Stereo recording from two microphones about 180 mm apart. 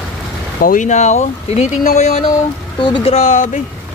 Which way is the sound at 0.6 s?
45° left (ahead or behind).